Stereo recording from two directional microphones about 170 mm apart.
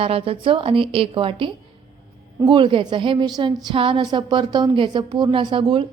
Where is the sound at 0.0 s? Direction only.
35° right (ahead or behind).